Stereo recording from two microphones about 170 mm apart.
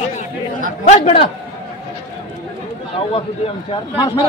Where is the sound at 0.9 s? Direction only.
35° left (ahead or behind).